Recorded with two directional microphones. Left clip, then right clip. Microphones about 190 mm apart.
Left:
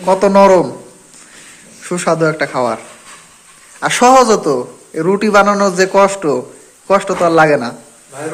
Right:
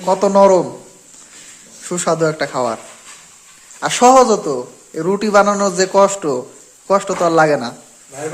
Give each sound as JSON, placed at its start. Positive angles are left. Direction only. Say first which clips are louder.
{"t": 0.0, "sound": "a man's voice", "louder": "left 2 dB", "side_deg": -15}
{"t": 1.8, "sound": "a man's voice", "louder": "left 3 dB", "side_deg": -15}
{"t": 3.8, "sound": "a man's voice", "louder": "left 1 dB", "side_deg": -15}